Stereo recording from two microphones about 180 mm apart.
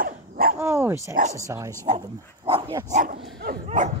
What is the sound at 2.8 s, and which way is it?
Speech, 40° right (ahead or behind).